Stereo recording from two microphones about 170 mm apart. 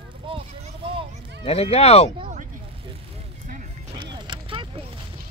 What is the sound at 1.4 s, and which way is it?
Speech, 35° left (ahead or behind).